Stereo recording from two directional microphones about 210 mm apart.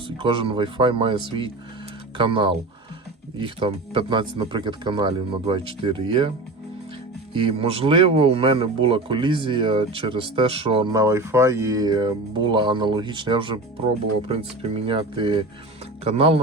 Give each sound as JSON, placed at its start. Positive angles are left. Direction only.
{"t": 0.2, "sound": "speech", "side_deg": -25}
{"t": 7.3, "sound": "speech", "side_deg": -25}